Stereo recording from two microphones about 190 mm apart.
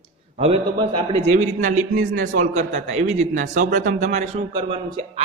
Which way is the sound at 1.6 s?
45° right (ahead or behind).